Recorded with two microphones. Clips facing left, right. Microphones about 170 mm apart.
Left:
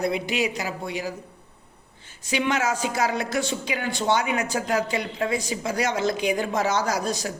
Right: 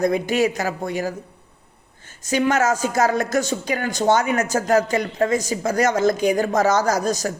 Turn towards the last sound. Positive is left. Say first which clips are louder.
# right 5 dB
turn(degrees=-45)  # may be behind; listen again after turning